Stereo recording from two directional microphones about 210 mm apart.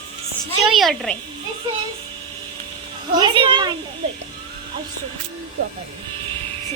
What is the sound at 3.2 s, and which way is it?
Speech, 20° right (ahead or behind).